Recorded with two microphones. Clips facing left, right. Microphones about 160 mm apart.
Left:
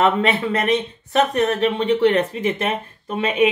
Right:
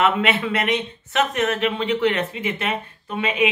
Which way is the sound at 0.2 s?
35° left (ahead or behind).